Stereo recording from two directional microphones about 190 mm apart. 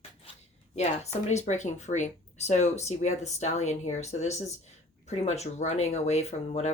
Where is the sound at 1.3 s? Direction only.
35° left (ahead or behind).